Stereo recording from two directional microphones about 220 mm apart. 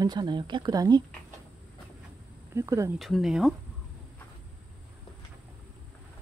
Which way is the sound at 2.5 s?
15° right (ahead or behind).